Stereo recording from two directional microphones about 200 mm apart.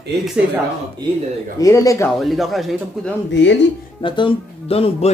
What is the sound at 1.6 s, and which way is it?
Speech, 15° left (ahead or behind).